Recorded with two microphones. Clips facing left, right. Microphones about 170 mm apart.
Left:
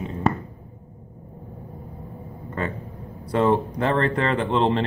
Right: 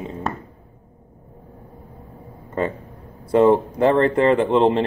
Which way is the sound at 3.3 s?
25° right (ahead or behind).